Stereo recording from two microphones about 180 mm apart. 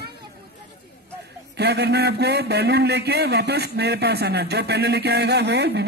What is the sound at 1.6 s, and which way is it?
A man's voice, 65° right (ahead or behind).